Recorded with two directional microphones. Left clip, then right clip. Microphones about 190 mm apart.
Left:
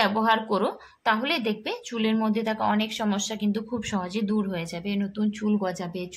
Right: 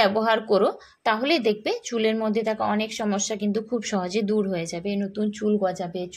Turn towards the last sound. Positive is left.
turn(degrees=-5)  # may be behind; listen again after turning